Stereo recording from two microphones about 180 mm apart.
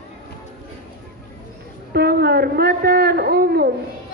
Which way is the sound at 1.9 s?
60° right (ahead or behind).